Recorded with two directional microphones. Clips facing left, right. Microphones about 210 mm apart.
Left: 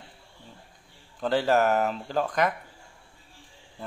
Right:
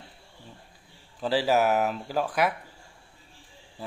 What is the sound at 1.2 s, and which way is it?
Speech, 5° right (ahead or behind).